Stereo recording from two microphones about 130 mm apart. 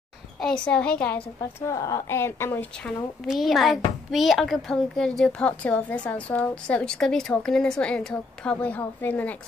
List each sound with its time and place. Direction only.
0.4 s a woman's voice: 5° left (ahead or behind)
1.4 s speech: 25° left (ahead or behind)
3.3 s a child's voice: centre (ahead or behind)